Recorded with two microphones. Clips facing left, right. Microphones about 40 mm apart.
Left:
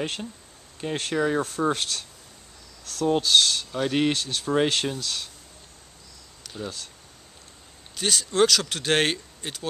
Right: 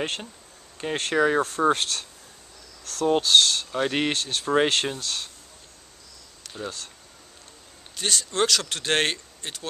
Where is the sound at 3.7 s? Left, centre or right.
Centre.